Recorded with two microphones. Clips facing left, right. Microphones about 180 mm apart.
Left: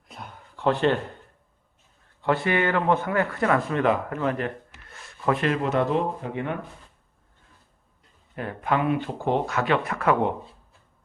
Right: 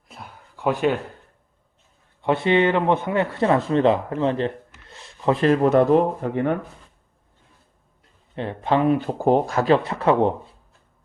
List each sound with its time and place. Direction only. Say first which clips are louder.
0.1 s a sound: even; 5° right (ahead or behind)
2.2 s speech: right 5 dB; 20° right (ahead or behind); by 6.5 s 45° right (ahead or behind)
8.4 s speech: right 4 dB; 30° right (ahead or behind)